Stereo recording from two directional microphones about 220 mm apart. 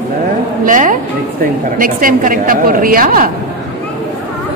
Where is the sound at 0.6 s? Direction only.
35° right (ahead or behind).